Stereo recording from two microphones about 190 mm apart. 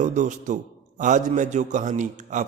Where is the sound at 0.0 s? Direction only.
40° right (ahead or behind).